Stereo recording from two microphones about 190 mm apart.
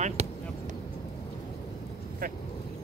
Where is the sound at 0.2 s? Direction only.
35° right (ahead or behind).